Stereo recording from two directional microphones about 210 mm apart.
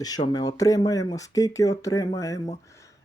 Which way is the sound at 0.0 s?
20° left (ahead or behind).